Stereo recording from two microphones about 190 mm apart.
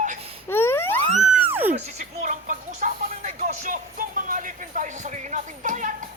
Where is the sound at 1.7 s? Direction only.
35° right (ahead or behind).